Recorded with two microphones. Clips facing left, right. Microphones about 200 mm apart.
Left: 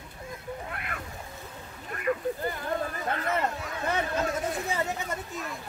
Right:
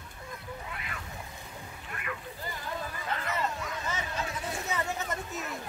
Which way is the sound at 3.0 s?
50° left (ahead or behind).